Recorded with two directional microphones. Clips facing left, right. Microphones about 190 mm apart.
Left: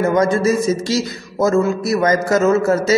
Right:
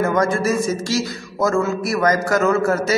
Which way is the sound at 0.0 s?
20° left (ahead or behind).